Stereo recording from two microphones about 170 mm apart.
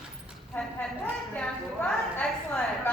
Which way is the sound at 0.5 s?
5° left (ahead or behind).